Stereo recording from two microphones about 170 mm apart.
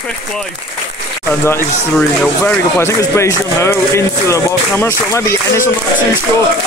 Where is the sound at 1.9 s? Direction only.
5° left (ahead or behind).